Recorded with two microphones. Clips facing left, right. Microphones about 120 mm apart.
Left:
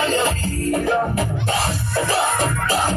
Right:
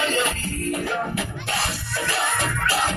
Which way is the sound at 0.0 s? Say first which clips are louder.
Left 4 dB; 40° left (ahead or behind).